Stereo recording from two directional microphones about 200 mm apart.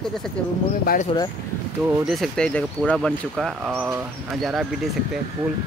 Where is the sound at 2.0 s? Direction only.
Centre (ahead or behind).